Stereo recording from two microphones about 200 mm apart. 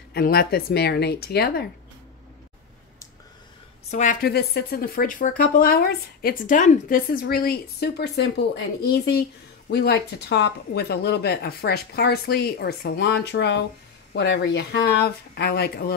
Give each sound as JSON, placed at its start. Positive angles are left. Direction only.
{"t": 0.1, "sound": "a woman's voice", "side_deg": 50}
{"t": 3.9, "sound": "a woman's voice", "side_deg": 40}